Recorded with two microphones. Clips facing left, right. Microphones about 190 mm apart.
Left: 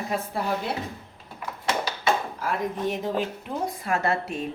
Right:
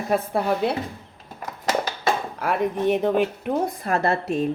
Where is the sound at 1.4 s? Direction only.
40° right (ahead or behind).